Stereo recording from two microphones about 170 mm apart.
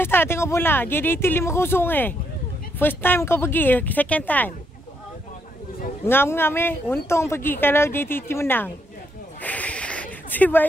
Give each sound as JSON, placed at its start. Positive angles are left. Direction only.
{"t": 0.0, "sound": "speech", "side_deg": 15}
{"t": 6.0, "sound": "speech", "side_deg": 15}
{"t": 9.4, "sound": "snake", "side_deg": 10}